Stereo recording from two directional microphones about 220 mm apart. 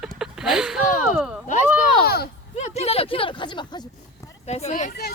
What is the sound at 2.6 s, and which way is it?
Speech, 30° left (ahead or behind).